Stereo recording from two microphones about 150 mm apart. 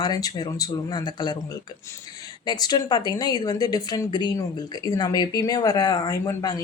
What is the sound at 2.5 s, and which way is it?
Speech, 25° left (ahead or behind).